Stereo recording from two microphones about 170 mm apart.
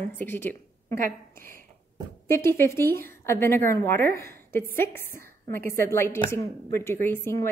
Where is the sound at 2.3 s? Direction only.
15° left (ahead or behind).